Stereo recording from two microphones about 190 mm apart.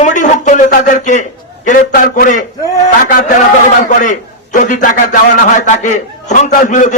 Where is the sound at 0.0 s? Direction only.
40° left (ahead or behind).